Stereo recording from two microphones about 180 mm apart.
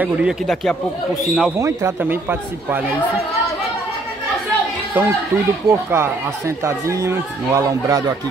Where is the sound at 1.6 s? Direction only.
15° right (ahead or behind).